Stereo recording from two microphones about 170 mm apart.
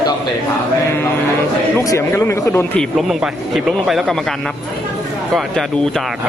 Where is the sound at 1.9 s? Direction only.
15° left (ahead or behind).